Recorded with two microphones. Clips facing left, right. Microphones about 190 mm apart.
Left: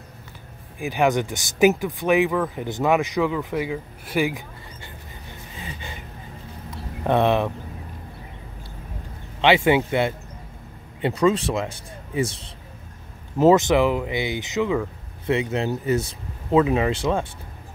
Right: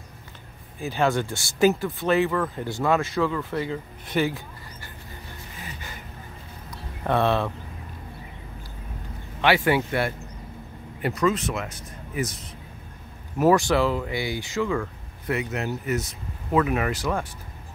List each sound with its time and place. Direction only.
0.7 s speech: 15° left (ahead or behind)
6.7 s a sound: 20° left (ahead or behind)
9.4 s speech: 20° left (ahead or behind)